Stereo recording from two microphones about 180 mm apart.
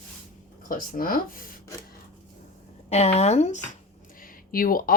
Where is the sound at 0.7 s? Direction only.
50° left (ahead or behind).